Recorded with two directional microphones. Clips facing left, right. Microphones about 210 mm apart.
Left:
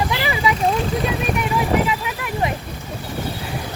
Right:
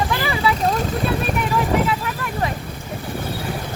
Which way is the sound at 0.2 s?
15° left (ahead or behind).